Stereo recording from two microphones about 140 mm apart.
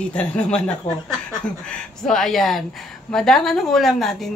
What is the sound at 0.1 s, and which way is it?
Speech, 10° left (ahead or behind).